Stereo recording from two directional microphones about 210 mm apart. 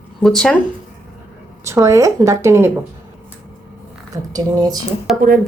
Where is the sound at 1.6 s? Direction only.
15° right (ahead or behind).